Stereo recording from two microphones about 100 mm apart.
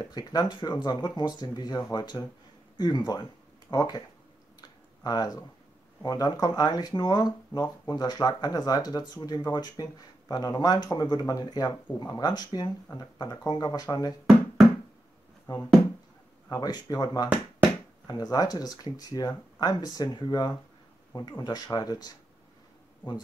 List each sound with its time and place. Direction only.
0.0 s speech: 45° left (ahead or behind)
4.6 s a sound: 40° left (ahead or behind)
6.0 s speech: 40° left (ahead or behind)
15.5 s speech: 40° left (ahead or behind)